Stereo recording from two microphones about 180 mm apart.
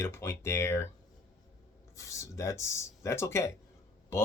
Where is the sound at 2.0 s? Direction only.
15° left (ahead or behind).